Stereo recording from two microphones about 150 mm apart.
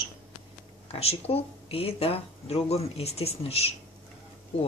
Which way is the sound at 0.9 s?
40° left (ahead or behind).